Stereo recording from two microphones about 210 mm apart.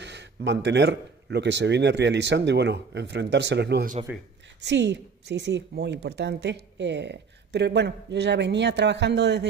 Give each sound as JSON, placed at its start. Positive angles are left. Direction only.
{"t": 0.0, "sound": "a woman's voice", "side_deg": -55}